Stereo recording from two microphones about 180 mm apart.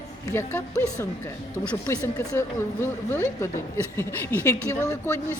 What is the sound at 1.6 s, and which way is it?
Speech, 10° left (ahead or behind).